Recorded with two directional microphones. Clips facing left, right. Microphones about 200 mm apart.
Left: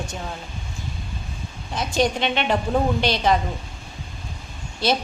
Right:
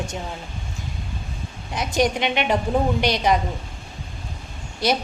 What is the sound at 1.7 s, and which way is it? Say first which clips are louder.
A woman's voice: right 1 dB; 15° right (ahead or behind).